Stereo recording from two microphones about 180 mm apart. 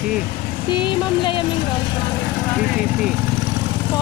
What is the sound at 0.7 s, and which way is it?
Speech, 25° left (ahead or behind).